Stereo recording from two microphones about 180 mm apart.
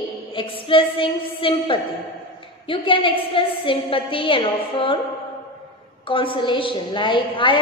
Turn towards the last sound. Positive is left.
turn(degrees=25)  # may be behind; listen again after turning